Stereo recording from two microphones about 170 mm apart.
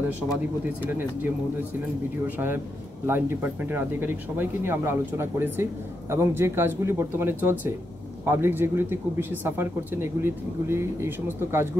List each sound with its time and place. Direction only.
2.2 s speech: 10° right (ahead or behind)